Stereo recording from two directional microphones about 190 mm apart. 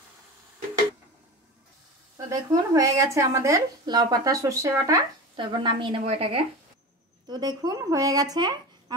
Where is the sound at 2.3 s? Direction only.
15° right (ahead or behind).